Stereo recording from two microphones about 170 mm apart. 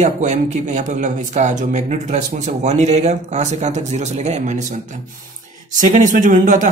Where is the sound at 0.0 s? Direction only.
45° right (ahead or behind).